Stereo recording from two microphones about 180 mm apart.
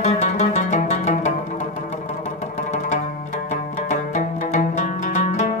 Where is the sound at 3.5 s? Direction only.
40° left (ahead or behind).